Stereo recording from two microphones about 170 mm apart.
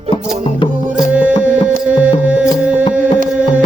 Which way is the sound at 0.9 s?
10° right (ahead or behind).